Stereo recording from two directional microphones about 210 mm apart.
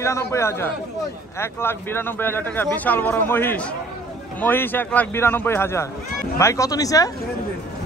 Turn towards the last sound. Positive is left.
turn(degrees=15)  # may be behind; listen again after turning